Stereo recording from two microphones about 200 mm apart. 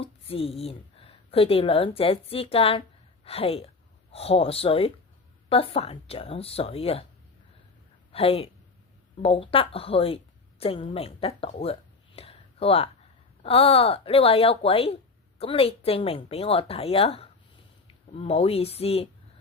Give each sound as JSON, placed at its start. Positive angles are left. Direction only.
{"t": 0.0, "sound": "a woman's voice", "side_deg": 30}
{"t": 8.1, "sound": "a woman's voice", "side_deg": 30}